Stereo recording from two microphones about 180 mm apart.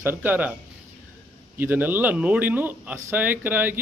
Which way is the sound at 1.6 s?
10° right (ahead or behind).